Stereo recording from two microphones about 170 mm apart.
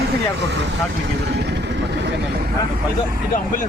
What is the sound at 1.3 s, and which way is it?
Vehicle, 80° right.